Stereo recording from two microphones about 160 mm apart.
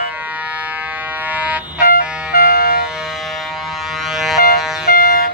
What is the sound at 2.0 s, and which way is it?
Music, 5° right (ahead or behind).